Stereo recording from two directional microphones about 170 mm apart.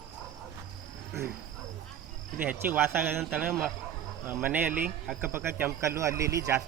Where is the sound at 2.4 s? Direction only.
10° right (ahead or behind).